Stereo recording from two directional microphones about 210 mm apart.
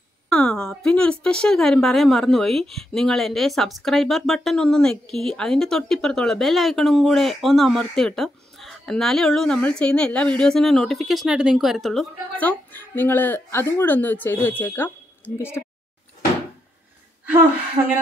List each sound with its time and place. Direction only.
0.3 s a woman's voice: 5° left (ahead or behind)
17.8 s speech: 25° right (ahead or behind)